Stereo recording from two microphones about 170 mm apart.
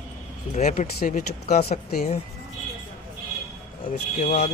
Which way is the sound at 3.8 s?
45° left (ahead or behind).